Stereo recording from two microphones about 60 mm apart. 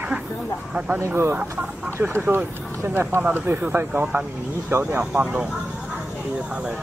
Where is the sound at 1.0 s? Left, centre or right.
Right.